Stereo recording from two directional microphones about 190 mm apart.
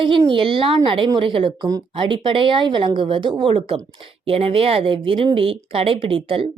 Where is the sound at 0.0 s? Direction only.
25° right (ahead or behind).